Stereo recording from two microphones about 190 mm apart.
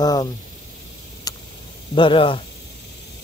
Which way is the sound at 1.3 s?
20° left (ahead or behind).